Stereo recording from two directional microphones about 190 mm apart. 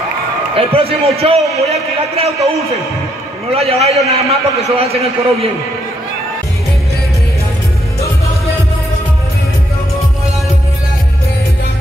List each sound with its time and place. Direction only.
0.6 s a man's voice: 30° right (ahead or behind)
3.5 s a man's voice: 35° right (ahead or behind)